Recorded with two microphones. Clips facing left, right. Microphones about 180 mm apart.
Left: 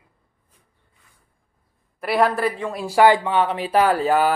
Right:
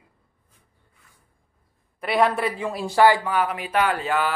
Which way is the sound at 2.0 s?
Centre (ahead or behind).